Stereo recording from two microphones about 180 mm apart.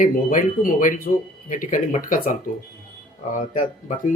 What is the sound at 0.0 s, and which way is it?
Speech, 50° left (ahead or behind).